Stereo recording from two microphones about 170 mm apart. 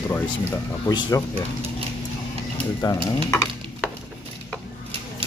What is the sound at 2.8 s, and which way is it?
Speech, 20° left (ahead or behind).